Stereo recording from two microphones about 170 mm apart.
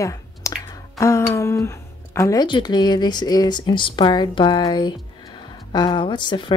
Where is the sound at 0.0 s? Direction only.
20° left (ahead or behind).